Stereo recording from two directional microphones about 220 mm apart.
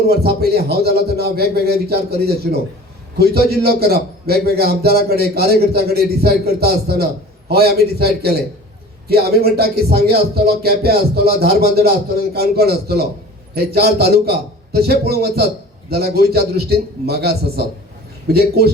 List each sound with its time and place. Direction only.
0.1 s a man's voice: 45° right (ahead or behind)